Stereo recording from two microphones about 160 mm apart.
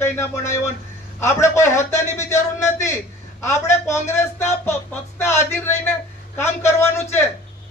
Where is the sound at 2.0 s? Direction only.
45° left (ahead or behind).